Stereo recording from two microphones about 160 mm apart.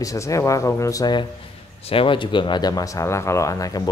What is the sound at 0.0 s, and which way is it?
Speech, 20° left (ahead or behind).